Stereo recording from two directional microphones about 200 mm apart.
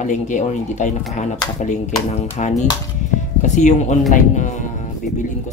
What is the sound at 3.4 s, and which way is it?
Speech, 35° left (ahead or behind).